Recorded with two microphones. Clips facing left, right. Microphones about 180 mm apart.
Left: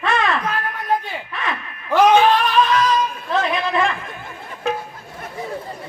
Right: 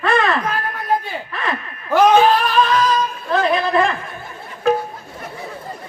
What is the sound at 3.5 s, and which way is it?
Speech, 35° right (ahead or behind).